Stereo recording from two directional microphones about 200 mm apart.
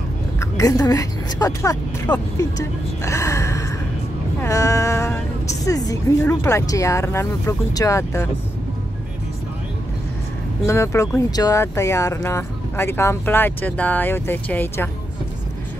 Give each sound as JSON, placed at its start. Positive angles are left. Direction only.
{"t": 0.4, "sound": "speech", "side_deg": 15}
{"t": 10.7, "sound": "speech", "side_deg": 15}